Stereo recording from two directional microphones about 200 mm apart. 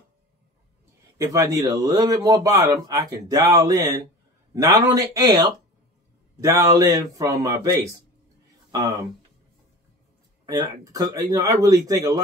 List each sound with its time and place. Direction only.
1.1 s a man's voice: 15° right (ahead or behind)
6.4 s a man's voice: 15° right (ahead or behind)
10.4 s a man's voice: 15° right (ahead or behind)